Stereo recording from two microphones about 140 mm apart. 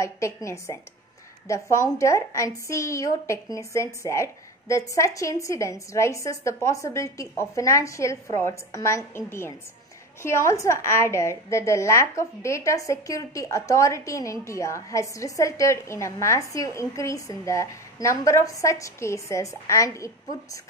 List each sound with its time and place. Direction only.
0.0 s a woman's voice: 20° left (ahead or behind)